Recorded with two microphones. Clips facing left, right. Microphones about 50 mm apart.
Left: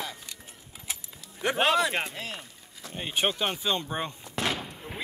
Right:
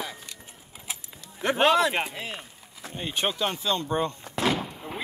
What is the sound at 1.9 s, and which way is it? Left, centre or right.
Speech, centre.